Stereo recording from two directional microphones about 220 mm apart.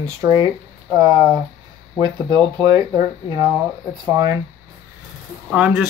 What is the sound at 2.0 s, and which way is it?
Speech, 20° right (ahead or behind).